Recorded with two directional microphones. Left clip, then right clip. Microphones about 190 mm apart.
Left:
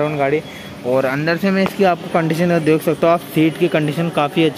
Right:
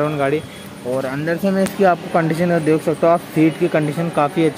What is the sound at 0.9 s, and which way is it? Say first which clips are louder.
Speech: left 4 dB; 10° left (ahead or behind).